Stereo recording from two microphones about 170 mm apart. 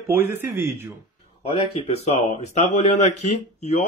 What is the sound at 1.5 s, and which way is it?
A man's voice, 35° left (ahead or behind).